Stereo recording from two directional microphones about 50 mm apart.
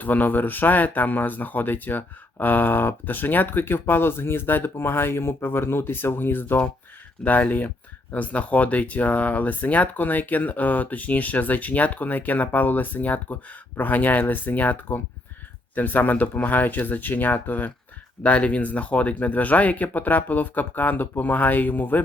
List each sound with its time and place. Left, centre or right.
0.0 s speech: left
7.3 s speech: left